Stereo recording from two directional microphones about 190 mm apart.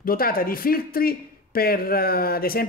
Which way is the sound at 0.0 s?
50° left (ahead or behind).